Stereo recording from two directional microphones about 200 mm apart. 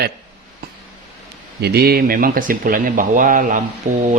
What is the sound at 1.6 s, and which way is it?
Speech, 50° right (ahead or behind).